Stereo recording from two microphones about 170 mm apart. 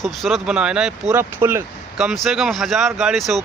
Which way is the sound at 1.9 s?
Centre (ahead or behind).